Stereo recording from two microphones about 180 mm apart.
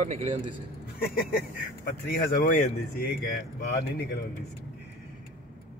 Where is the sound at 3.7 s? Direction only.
65° left (ahead or behind).